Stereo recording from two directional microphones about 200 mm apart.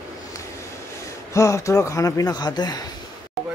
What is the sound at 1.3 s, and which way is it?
Speech, 15° left (ahead or behind).